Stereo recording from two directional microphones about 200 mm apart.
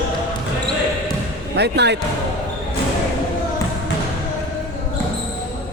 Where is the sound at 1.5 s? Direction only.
55° right (ahead or behind).